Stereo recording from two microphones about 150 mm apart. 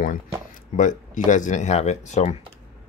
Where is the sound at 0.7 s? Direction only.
55° left (ahead or behind).